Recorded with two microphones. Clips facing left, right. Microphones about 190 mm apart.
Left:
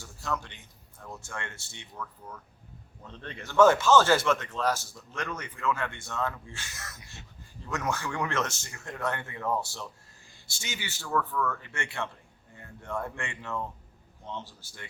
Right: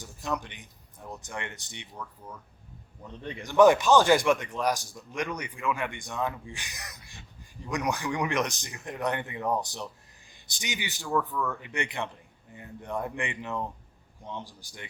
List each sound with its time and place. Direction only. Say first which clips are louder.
0.0 s speech: right 2 dB; 15° right (ahead or behind)
3.1 s a man's voice: right 4 dB; 15° right (ahead or behind)